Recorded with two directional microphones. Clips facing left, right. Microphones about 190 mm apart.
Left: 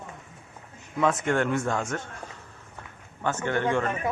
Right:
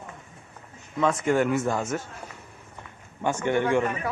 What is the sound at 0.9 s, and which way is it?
Speech, centre (ahead or behind).